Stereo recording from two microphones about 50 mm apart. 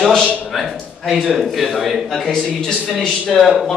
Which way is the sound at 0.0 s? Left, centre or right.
Centre.